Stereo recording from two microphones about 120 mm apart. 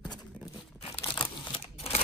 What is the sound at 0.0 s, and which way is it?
Horse, 35° left (ahead or behind).